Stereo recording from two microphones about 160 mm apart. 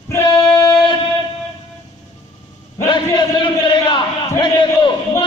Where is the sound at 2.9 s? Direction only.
30° left (ahead or behind).